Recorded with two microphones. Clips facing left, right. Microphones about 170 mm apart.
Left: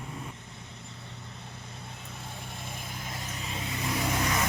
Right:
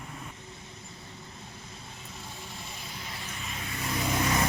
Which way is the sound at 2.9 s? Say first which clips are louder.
Left 2 dB; 50° left (ahead or behind).